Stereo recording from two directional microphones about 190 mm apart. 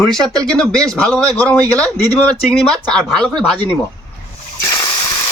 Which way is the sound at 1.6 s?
20° right (ahead or behind).